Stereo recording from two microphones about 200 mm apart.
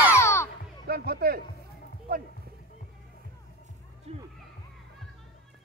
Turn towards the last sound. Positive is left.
turn(degrees=-30)  # may be behind; listen again after turning